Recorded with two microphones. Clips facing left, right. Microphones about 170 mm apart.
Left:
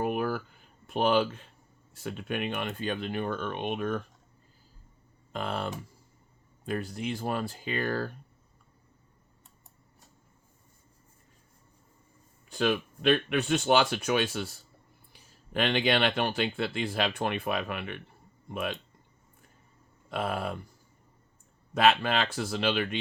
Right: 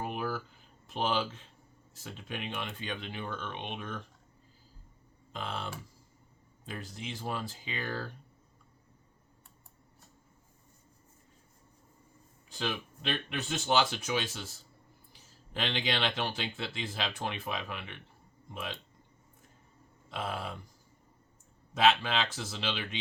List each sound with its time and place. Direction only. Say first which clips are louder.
0.0 s a sound: left 6 dB; 55° left (ahead or behind)
0.9 s speech: left 7 dB; 55° left (ahead or behind)
5.3 s speech: left 6 dB; 55° left (ahead or behind)
12.5 s speech: left 8 dB; 60° left (ahead or behind)
20.1 s speech: left 6 dB; 55° left (ahead or behind)
21.8 s speech: left 3 dB; 55° left (ahead or behind)